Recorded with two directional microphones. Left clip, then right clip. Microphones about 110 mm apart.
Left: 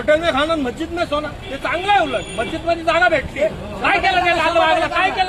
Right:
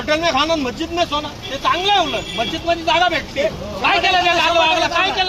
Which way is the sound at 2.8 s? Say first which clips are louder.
Left 2 dB; 25° left (ahead or behind).